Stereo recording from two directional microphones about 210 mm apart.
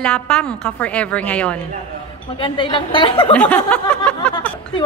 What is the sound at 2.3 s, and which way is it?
A woman's voice, 25° left (ahead or behind).